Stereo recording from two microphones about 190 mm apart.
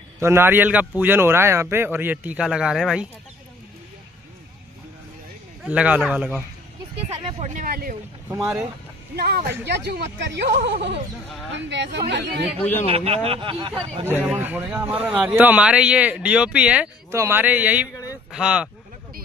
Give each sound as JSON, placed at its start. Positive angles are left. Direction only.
{"t": 0.2, "sound": "a man's voice", "side_deg": -10}
{"t": 5.7, "sound": "a man's voice", "side_deg": -5}
{"t": 7.2, "sound": "a sound", "side_deg": -30}
{"t": 8.3, "sound": "a man's voice", "side_deg": -10}
{"t": 9.1, "sound": "speech", "side_deg": -55}
{"t": 12.8, "sound": "speech", "side_deg": -30}
{"t": 14.0, "sound": "a man's voice", "side_deg": -10}